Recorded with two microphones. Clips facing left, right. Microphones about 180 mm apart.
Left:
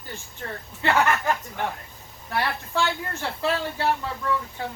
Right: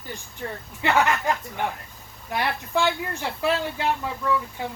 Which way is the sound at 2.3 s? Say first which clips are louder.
Right 1 dB; 15° right (ahead or behind).